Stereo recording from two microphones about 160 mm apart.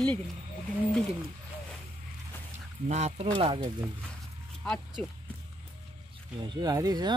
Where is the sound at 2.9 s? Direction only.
40° right (ahead or behind).